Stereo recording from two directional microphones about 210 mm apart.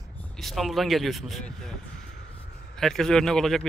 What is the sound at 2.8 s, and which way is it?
Speech, centre (ahead or behind).